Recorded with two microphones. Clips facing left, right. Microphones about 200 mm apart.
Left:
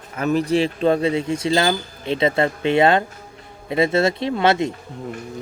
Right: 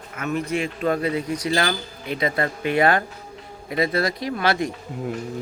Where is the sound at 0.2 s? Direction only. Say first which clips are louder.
Left 6 dB; 35° left (ahead or behind).